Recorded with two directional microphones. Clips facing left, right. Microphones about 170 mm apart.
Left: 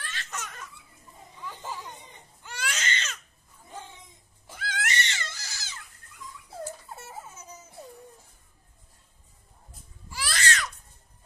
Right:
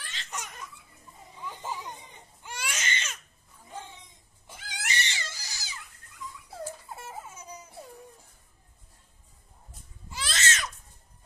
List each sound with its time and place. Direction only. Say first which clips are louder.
0.0 s laughter: left 2 dB; 15° right (ahead or behind)
2.4 s baby cry: left 2 dB; 10° right (ahead or behind)
4.6 s cat: left 4 dB; 15° right (ahead or behind)
10.0 s baby cry: left 2 dB; 20° right (ahead or behind)